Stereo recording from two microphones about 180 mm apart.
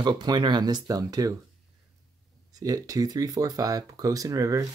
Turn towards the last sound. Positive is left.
turn(degrees=-20)  # may be behind; listen again after turning